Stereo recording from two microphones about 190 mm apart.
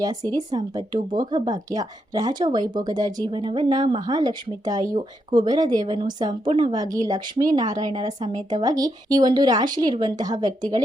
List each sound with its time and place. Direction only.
0.5 s speech: 20° right (ahead or behind)